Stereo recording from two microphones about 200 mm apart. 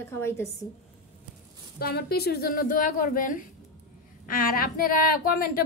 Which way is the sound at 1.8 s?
50° left (ahead or behind).